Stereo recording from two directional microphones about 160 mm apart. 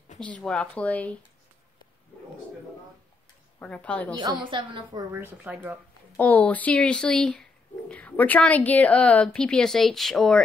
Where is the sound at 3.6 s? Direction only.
5° left (ahead or behind).